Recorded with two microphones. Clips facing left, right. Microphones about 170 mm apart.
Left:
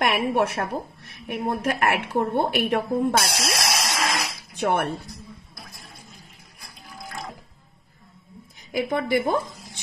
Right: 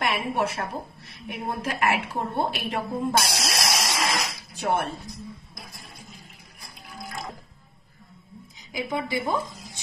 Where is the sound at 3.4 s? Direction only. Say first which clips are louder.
Left 1 dB; centre (ahead or behind).